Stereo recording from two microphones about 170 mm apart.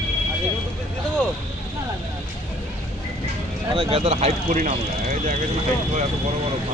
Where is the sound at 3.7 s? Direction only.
30° right (ahead or behind).